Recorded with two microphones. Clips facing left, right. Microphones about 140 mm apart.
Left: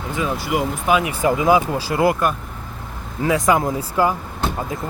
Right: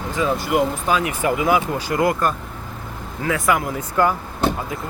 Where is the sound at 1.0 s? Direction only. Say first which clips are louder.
Left 2 dB; 25° left (ahead or behind).